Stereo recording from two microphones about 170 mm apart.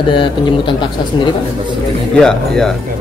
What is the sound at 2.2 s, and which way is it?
Speech, 5° left (ahead or behind).